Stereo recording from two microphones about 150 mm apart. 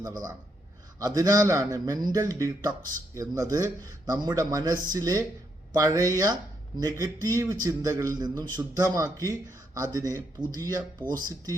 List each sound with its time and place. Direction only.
0.0 s a man's voice: 25° right (ahead or behind)